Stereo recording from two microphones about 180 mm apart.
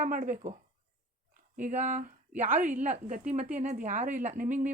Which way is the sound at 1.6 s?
40° right (ahead or behind).